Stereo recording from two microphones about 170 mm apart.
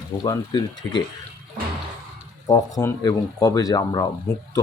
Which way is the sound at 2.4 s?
20° left (ahead or behind).